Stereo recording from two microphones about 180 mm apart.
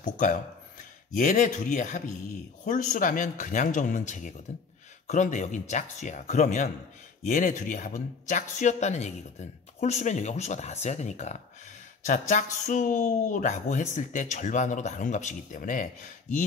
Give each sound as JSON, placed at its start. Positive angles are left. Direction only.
{"t": 0.0, "sound": "a man's voice", "side_deg": 45}